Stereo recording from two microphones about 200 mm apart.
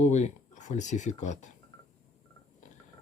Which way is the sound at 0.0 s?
35° left (ahead or behind).